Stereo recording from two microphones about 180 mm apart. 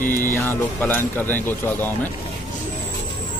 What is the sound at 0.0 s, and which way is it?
Music, 50° left (ahead or behind).